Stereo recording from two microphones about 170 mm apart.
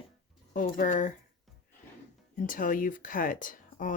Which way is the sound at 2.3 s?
50° left (ahead or behind).